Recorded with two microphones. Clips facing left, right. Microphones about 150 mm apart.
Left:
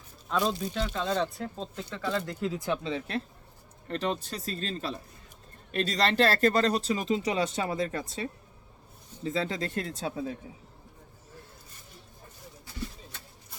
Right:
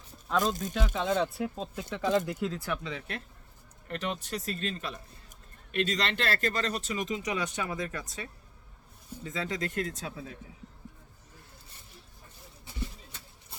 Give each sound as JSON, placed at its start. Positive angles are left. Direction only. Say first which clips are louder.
{"t": 0.6, "sound": "speech", "louder": "even", "side_deg": -5}
{"t": 2.6, "sound": "speech", "louder": "left 4 dB", "side_deg": 20}